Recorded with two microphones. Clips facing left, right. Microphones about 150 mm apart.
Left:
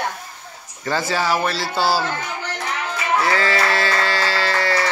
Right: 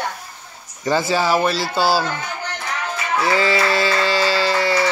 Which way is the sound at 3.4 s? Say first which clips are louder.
Right 2 dB; 15° right (ahead or behind).